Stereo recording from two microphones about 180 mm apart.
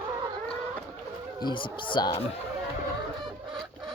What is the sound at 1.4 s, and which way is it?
Speech, 25° left (ahead or behind).